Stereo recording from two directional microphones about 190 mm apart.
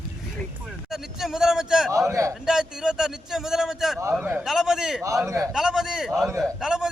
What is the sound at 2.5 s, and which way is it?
Speech, 5° right (ahead or behind).